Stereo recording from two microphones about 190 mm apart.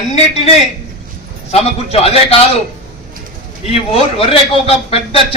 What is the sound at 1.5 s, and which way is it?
Speech, 35° left (ahead or behind).